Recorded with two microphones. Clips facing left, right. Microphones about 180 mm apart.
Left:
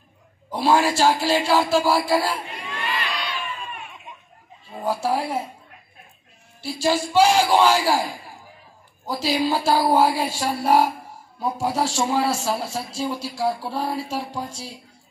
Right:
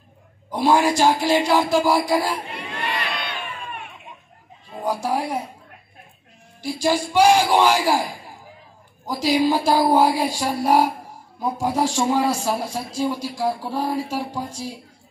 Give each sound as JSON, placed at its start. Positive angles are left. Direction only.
{"t": 0.5, "sound": "speech", "side_deg": -15}
{"t": 2.5, "sound": "crowd", "side_deg": -60}
{"t": 4.8, "sound": "speech", "side_deg": -15}
{"t": 6.6, "sound": "speech", "side_deg": -15}
{"t": 9.0, "sound": "speech", "side_deg": -15}